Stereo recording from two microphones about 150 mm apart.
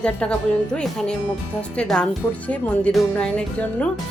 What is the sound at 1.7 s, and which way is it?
A woman's voice, 5° left (ahead or behind).